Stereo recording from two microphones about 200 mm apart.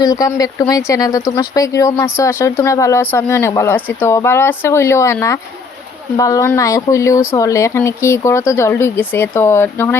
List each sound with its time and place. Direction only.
0.0 s speech: 15° left (ahead or behind)